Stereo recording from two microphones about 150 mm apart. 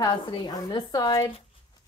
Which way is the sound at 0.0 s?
30° left (ahead or behind).